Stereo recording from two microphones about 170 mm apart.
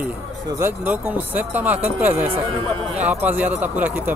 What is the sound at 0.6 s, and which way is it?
Speech, 10° right (ahead or behind).